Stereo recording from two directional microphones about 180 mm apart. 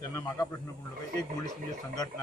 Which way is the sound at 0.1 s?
20° left (ahead or behind).